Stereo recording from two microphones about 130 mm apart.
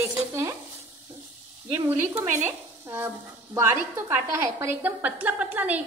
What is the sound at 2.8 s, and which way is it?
A woman's voice, 20° right (ahead or behind).